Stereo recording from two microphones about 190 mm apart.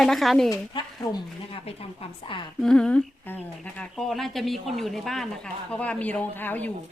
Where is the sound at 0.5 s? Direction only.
20° left (ahead or behind).